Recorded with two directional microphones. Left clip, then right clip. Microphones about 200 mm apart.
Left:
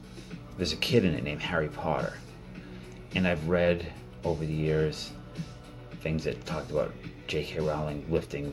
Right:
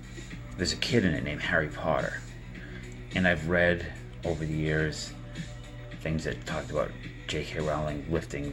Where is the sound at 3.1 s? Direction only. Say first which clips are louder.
Right 2 dB; 5° left (ahead or behind).